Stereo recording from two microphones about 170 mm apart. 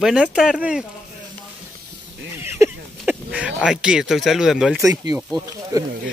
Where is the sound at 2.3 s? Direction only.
15° right (ahead or behind).